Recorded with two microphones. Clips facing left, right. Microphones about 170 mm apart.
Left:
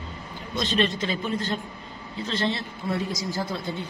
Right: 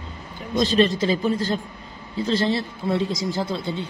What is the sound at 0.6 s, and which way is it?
A man's voice, 35° right (ahead or behind).